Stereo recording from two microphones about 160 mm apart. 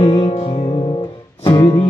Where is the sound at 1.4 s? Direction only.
30° left (ahead or behind).